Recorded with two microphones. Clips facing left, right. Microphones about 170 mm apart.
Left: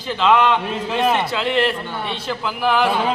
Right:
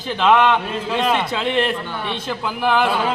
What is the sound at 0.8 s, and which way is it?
Speech, 15° left (ahead or behind).